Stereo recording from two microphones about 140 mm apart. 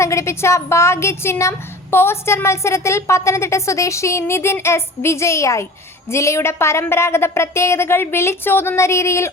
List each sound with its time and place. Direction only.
0.0 s speech: 20° left (ahead or behind)